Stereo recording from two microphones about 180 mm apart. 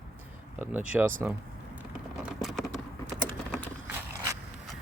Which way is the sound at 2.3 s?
Centre (ahead or behind).